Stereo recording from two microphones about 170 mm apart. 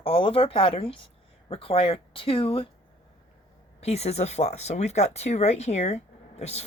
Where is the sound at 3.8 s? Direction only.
40° left (ahead or behind).